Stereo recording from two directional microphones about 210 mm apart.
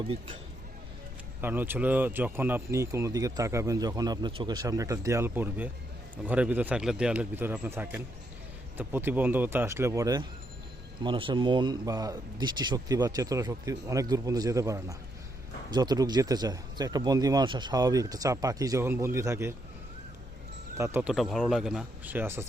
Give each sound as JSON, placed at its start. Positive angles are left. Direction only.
{"t": 0.0, "sound": "speech", "side_deg": -25}
{"t": 1.4, "sound": "speech", "side_deg": -10}
{"t": 20.7, "sound": "speech", "side_deg": -10}